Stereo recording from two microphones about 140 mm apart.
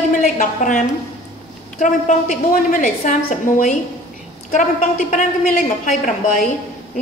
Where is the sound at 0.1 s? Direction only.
65° left (ahead or behind).